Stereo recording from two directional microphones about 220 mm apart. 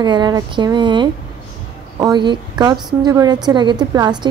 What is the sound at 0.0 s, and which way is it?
A woman's voice, 20° right (ahead or behind).